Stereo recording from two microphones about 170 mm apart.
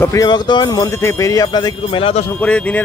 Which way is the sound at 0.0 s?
20° left (ahead or behind).